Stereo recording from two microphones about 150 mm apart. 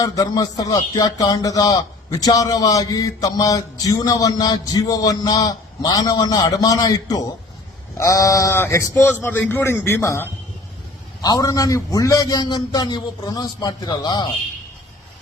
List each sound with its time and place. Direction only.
0.0 s a man's voice: 25° left (ahead or behind)